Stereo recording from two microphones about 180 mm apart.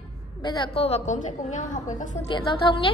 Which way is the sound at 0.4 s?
30° left (ahead or behind).